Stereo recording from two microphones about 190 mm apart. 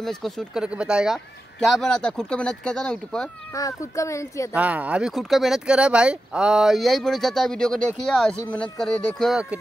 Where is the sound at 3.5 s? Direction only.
15° left (ahead or behind).